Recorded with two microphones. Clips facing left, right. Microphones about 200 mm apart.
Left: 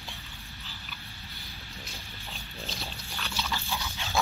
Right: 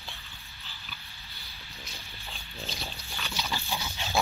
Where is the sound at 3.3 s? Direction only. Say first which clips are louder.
Even; 15° right (ahead or behind).